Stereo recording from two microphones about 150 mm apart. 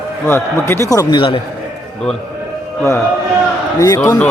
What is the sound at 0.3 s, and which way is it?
Speech, 15° left (ahead or behind).